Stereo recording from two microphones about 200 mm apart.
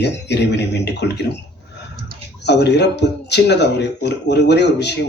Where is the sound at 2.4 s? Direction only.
60° left (ahead or behind).